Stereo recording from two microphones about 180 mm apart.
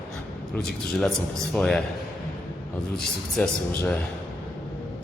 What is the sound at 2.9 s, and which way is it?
A man's voice, 5° left (ahead or behind).